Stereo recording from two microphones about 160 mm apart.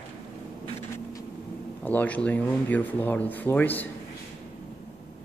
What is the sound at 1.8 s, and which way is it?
Speech, 10° left (ahead or behind).